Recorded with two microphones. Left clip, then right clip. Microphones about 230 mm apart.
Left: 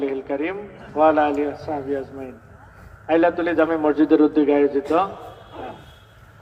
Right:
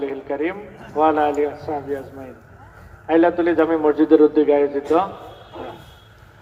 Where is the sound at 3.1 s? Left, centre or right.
Left.